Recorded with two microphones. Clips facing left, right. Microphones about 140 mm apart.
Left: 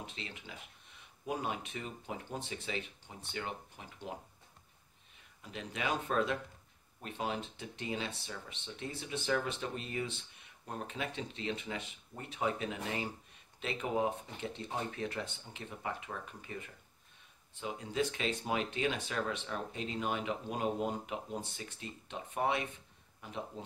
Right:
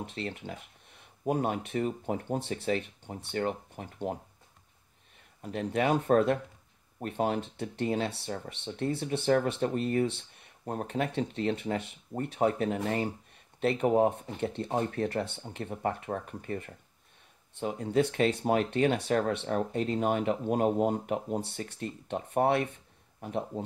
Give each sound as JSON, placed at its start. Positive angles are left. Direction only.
{"t": 0.0, "sound": "speech", "side_deg": -55}
{"t": 5.4, "sound": "speech", "side_deg": -50}
{"t": 21.4, "sound": "speech", "side_deg": -65}